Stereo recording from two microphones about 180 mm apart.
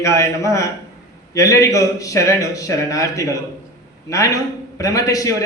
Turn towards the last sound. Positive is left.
turn(degrees=20)  # may be behind; listen again after turning